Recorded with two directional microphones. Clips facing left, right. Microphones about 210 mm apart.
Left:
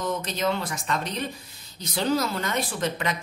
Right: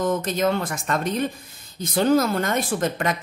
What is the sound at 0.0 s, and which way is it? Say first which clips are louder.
A woman's voice: right 5 dB; 50° right (ahead or behind).